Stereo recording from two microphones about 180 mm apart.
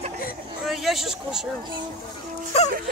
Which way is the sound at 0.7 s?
Centre (ahead or behind).